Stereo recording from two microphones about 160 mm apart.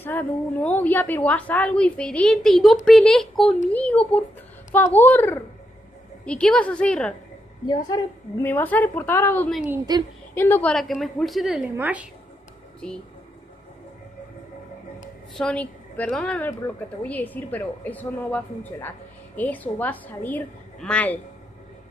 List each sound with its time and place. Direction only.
0.0 s a woman's voice: 10° left (ahead or behind)
7.6 s a woman's voice: 25° left (ahead or behind)
8.4 s a woman's voice: 15° left (ahead or behind); by 12.1 s 10° right (ahead or behind)
15.3 s a woman's voice: 5° left (ahead or behind)